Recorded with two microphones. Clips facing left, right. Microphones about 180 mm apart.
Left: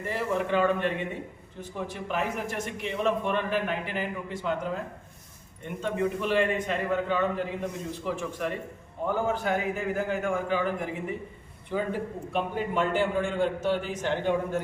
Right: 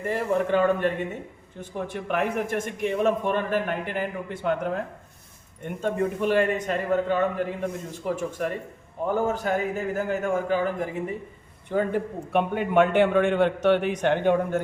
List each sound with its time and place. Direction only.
0.0 s a man's voice: 50° right (ahead or behind)
1.7 s a man's voice: 60° right (ahead or behind)
11.7 s a man's voice: 55° right (ahead or behind)